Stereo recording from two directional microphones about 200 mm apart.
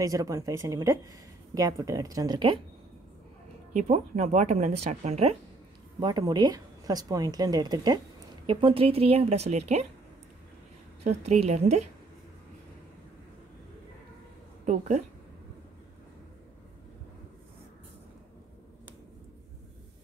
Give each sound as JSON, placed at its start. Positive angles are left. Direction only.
{"t": 0.0, "sound": "speech", "side_deg": -15}
{"t": 3.7, "sound": "speech", "side_deg": -35}
{"t": 5.9, "sound": "speech", "side_deg": -20}
{"t": 11.1, "sound": "speech", "side_deg": -35}
{"t": 14.6, "sound": "a woman's voice", "side_deg": -40}